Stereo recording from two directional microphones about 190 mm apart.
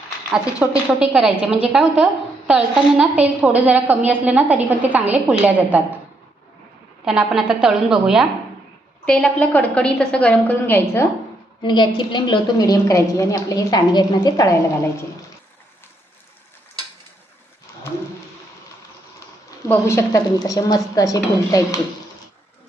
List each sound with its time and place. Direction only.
0.3 s a woman's voice: 5° right (ahead or behind)
7.0 s a woman's voice: centre (ahead or behind)
11.6 s a woman's voice: 25° left (ahead or behind)
19.6 s a woman's voice: 15° left (ahead or behind)